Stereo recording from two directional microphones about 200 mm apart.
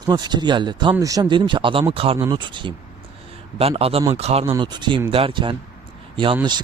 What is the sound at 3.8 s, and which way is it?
Speech, 30° right (ahead or behind).